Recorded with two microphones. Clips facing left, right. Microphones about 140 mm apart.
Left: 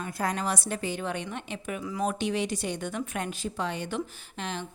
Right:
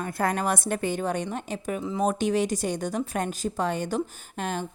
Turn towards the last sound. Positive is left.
turn(degrees=-45)  # may be behind; listen again after turning